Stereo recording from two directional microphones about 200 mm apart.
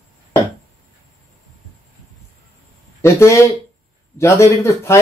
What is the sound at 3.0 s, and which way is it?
Speech, 15° left (ahead or behind).